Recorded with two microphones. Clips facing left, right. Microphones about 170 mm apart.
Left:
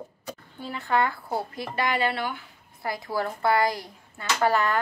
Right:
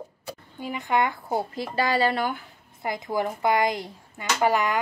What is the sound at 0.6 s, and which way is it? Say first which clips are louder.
Speech: right 1 dB; 15° right (ahead or behind).